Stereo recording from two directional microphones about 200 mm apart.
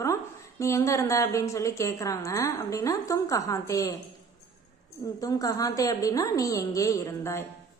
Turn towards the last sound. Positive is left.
turn(degrees=15)  # may be behind; listen again after turning